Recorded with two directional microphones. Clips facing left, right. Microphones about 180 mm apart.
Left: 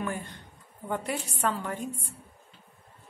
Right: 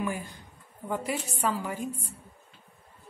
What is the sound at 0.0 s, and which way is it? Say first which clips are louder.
Speech: right 1 dB; 5° right (ahead or behind).